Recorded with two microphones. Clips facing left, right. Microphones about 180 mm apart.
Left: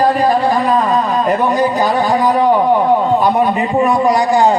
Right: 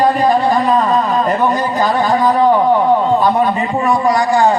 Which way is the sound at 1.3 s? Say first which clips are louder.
Left 2 dB; 15° left (ahead or behind).